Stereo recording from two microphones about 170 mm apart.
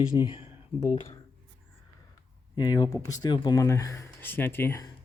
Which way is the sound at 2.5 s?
20° left (ahead or behind).